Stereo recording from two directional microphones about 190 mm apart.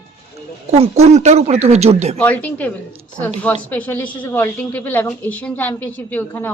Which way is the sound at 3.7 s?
10° left (ahead or behind).